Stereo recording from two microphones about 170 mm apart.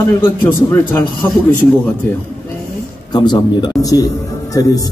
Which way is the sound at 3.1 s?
25° left (ahead or behind).